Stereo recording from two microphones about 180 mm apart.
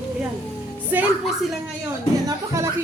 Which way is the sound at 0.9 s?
10° right (ahead or behind).